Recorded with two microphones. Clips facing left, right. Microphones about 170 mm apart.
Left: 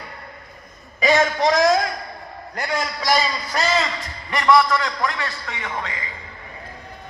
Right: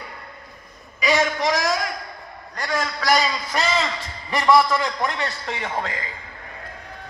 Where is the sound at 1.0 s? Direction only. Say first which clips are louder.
Left 3 dB; 30° left (ahead or behind).